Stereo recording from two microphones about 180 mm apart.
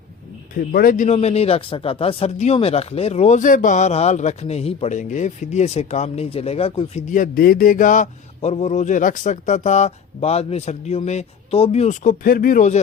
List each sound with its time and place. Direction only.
0.5 s speech: 55° left (ahead or behind)
1.0 s speech: 35° left (ahead or behind)
7.1 s speech: 50° left (ahead or behind)